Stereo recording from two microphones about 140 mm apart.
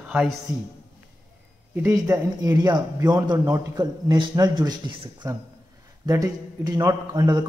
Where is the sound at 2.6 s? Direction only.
30° right (ahead or behind).